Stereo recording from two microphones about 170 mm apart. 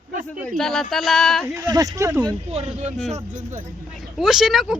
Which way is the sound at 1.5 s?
20° right (ahead or behind).